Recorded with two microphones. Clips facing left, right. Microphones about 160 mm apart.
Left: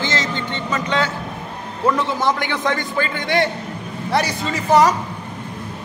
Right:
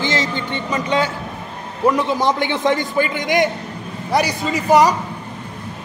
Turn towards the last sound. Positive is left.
turn(degrees=-15)  # may be behind; listen again after turning